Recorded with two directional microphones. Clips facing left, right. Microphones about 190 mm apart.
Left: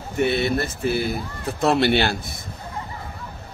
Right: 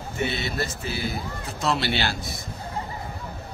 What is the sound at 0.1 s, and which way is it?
Speech, 60° left (ahead or behind).